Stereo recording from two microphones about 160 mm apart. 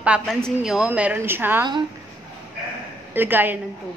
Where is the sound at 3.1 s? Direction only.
10° right (ahead or behind).